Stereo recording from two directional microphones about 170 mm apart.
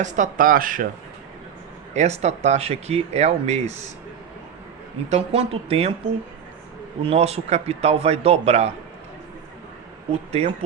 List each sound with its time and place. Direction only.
0.0 s speech: 45° right (ahead or behind)
1.9 s speech: 40° right (ahead or behind)
5.0 s speech: 40° right (ahead or behind)
7.0 s speech: 35° right (ahead or behind)
10.1 s speech: 35° right (ahead or behind)